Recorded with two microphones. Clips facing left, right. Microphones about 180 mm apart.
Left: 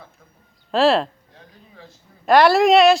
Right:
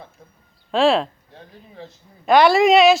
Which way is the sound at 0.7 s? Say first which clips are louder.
Even; centre (ahead or behind).